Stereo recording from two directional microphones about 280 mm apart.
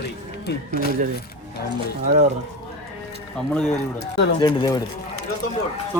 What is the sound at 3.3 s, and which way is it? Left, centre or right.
Speech, centre.